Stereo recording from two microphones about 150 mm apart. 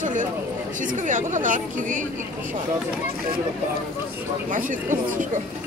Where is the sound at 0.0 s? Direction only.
55° right (ahead or behind).